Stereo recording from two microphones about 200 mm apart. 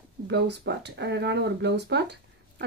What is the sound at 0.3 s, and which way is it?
Speech, 60° right (ahead or behind).